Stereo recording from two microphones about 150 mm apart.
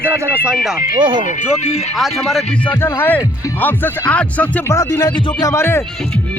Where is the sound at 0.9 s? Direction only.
35° right (ahead or behind).